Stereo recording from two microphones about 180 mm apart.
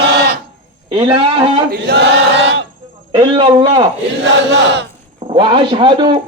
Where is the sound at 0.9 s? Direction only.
25° right (ahead or behind).